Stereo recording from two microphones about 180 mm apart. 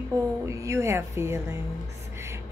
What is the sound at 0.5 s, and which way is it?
A woman's voice, 15° right (ahead or behind).